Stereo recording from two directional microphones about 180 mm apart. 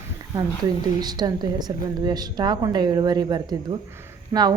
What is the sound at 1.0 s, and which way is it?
A woman's voice, 25° right (ahead or behind).